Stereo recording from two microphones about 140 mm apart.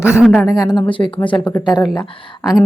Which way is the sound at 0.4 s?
25° left (ahead or behind).